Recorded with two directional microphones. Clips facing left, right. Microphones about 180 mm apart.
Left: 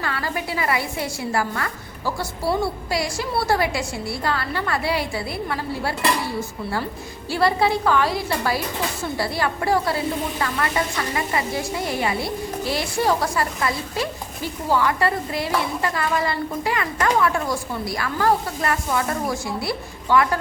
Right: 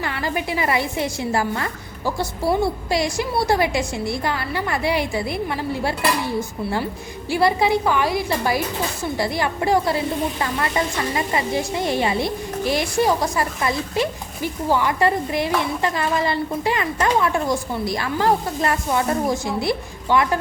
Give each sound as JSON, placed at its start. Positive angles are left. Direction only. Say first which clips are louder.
{"t": 0.0, "sound": "a woman's voice", "louder": "right 2 dB", "side_deg": -20}
{"t": 7.3, "sound": "a woman's voice", "louder": "right 2 dB", "side_deg": -15}